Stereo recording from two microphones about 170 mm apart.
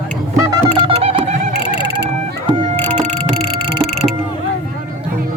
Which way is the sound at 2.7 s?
10° left (ahead or behind).